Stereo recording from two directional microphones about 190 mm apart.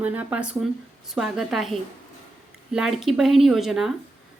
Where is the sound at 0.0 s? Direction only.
10° right (ahead or behind).